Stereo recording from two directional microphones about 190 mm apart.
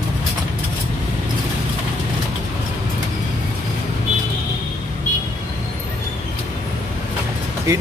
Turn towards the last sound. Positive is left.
turn(degrees=-15)  # may be behind; listen again after turning